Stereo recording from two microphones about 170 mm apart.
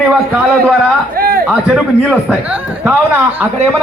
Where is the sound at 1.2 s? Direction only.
60° right (ahead or behind).